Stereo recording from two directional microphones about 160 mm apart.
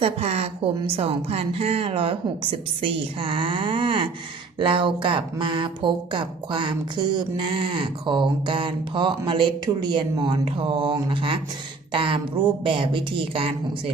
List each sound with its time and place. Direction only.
0.0 s speech: 40° right (ahead or behind)